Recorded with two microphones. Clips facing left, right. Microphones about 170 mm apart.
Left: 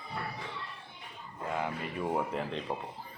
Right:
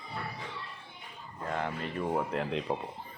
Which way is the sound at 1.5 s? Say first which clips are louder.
Right 1 dB; 5° left (ahead or behind).